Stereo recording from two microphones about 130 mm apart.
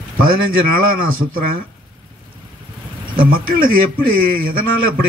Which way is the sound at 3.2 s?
90° right.